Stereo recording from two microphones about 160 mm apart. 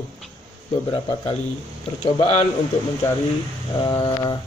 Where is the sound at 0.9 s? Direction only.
40° left (ahead or behind).